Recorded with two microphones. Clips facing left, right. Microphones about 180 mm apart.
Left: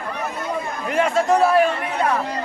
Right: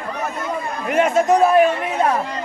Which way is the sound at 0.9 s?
20° right (ahead or behind).